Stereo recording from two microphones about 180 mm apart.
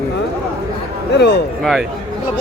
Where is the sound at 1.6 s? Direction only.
Centre (ahead or behind).